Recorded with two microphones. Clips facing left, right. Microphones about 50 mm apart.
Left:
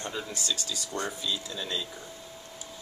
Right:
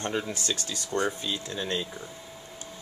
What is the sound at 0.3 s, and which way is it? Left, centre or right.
Speech, right.